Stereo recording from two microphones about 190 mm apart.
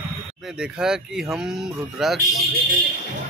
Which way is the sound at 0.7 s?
5° right (ahead or behind).